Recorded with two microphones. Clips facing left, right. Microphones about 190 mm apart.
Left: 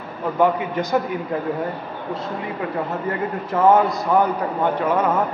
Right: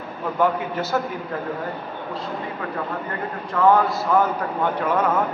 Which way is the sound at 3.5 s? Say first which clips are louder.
Left 2 dB; 20° left (ahead or behind).